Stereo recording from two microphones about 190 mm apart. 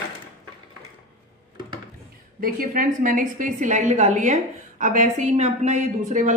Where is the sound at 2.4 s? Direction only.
50° right (ahead or behind).